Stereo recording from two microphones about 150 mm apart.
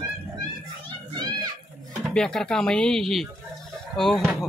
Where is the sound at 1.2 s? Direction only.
30° right (ahead or behind).